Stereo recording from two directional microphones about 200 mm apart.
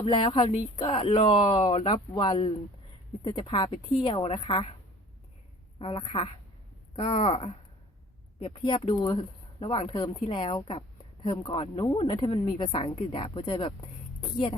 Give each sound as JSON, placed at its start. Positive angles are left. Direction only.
{"t": 0.0, "sound": "speech", "side_deg": 25}
{"t": 5.8, "sound": "a woman's voice", "side_deg": 25}